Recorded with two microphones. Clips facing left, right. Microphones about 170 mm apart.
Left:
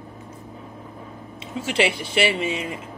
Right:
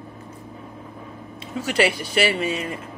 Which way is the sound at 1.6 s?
20° left (ahead or behind).